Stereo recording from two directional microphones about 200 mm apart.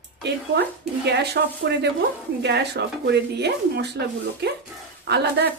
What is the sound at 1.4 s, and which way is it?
A woman's voice, 50° right (ahead or behind).